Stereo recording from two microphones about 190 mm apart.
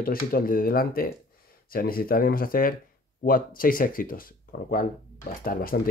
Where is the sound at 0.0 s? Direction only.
50° left (ahead or behind).